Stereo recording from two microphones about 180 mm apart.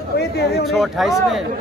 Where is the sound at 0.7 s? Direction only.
Centre (ahead or behind).